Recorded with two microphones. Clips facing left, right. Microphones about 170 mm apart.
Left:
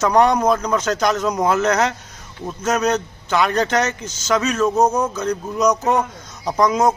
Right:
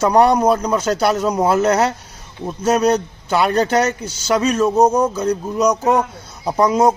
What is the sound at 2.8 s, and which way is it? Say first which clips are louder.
A man's voice: right 4 dB; 10° right (ahead or behind).